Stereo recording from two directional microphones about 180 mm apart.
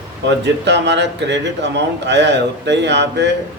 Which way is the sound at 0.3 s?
75° right (ahead or behind).